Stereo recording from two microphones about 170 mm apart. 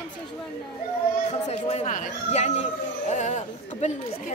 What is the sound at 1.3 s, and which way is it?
Speech, 40° left (ahead or behind).